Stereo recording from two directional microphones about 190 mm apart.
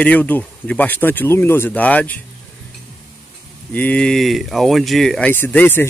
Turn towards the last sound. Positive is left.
turn(degrees=10)  # may be behind; listen again after turning